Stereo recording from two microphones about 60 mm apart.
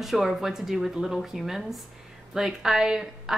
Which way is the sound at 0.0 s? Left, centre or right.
Centre.